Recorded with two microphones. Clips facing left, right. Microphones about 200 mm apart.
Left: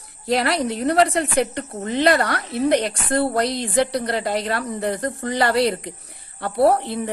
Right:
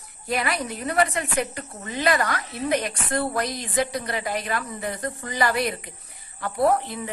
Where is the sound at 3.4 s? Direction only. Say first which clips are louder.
Left 6 dB; 70° left (ahead or behind).